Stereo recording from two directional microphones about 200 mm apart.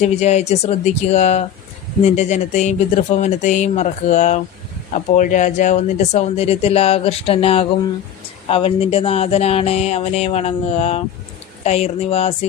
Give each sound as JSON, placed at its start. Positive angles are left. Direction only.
{"t": 0.0, "sound": "speech", "side_deg": 35}